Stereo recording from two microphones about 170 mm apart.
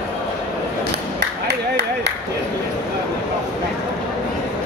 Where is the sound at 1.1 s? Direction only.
75° right (ahead or behind).